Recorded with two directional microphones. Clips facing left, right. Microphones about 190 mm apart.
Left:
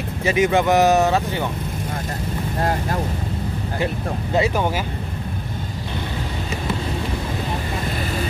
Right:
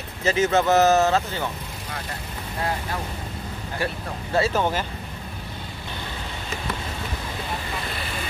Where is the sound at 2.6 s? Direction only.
45° left (ahead or behind).